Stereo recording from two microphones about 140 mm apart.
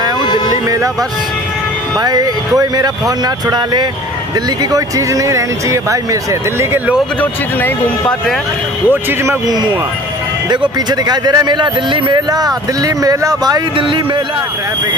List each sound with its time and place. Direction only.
2.0 s speech: 30° right (ahead or behind)
7.2 s speech: 15° left (ahead or behind)
9.2 s speech: 20° right (ahead or behind)
10.5 s speech: 30° right (ahead or behind)